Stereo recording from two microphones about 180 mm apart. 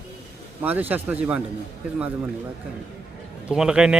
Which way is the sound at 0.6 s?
10° right (ahead or behind).